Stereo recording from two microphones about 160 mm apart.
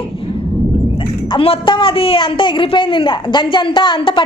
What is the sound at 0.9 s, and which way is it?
A woman's voice, 35° left (ahead or behind).